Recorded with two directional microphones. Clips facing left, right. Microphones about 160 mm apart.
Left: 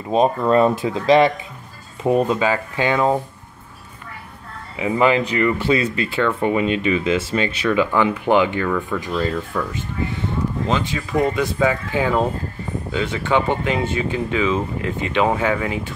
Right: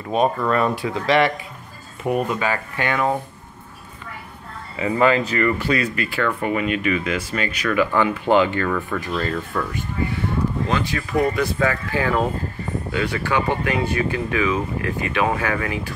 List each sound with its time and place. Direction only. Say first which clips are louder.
0.1 s speech: left 3 dB; 25° left (ahead or behind)
4.7 s speech: left 1 dB; 15° left (ahead or behind)
8.6 s speech: left 1 dB; centre (ahead or behind)
10.7 s speech: left 1 dB; 20° left (ahead or behind)